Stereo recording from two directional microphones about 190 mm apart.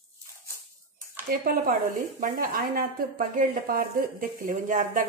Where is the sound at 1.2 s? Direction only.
50° right (ahead or behind).